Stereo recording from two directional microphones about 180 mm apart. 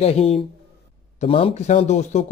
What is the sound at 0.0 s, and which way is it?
Speech, 35° left (ahead or behind).